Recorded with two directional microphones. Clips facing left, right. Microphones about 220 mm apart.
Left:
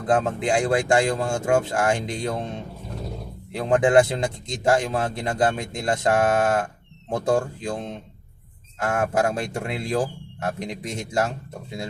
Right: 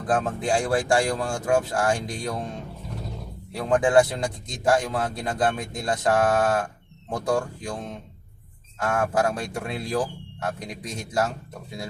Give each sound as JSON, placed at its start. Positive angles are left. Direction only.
{"t": 0.1, "sound": "a man's voice", "side_deg": 20}